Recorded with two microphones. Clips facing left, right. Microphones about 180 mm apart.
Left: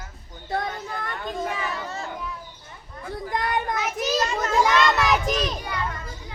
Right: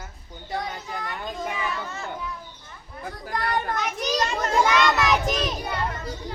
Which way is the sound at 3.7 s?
5° left (ahead or behind).